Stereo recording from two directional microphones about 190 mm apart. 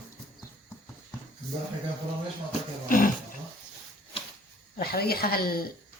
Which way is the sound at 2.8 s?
45° left (ahead or behind).